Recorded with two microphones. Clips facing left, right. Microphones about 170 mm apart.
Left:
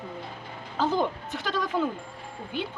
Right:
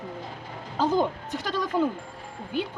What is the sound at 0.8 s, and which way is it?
Speech, 15° right (ahead or behind).